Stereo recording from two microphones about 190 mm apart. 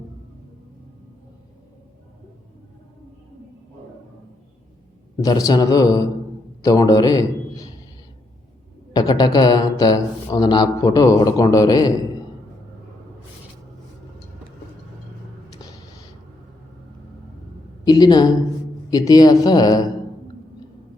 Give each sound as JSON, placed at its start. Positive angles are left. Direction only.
{"t": 5.2, "sound": "a man's voice", "side_deg": 20}
{"t": 8.9, "sound": "speech", "side_deg": 20}
{"t": 17.8, "sound": "speech", "side_deg": 20}